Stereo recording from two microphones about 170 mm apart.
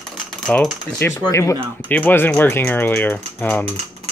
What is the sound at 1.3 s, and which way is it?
Speech, 20° left (ahead or behind).